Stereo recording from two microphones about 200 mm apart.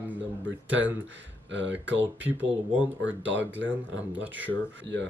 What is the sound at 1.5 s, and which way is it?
Speech, 65° right (ahead or behind).